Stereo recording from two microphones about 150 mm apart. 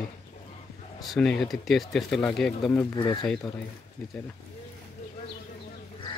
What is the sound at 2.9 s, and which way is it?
Speech, 30° left (ahead or behind).